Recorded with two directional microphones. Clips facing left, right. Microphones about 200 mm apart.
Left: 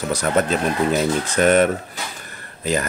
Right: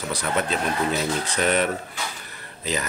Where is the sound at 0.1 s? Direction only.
45° left (ahead or behind).